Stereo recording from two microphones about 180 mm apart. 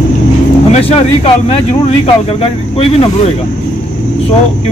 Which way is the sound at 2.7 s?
35° left (ahead or behind).